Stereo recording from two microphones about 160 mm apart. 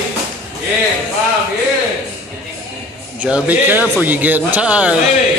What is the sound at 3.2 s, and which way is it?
A man's voice, 10° right (ahead or behind).